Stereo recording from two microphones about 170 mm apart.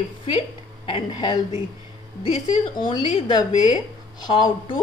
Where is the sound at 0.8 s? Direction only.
30° left (ahead or behind).